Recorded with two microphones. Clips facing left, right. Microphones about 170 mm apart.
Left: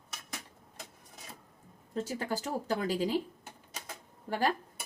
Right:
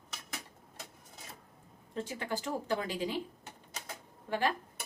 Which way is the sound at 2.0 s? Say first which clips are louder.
Left 1 dB; 40° left (ahead or behind).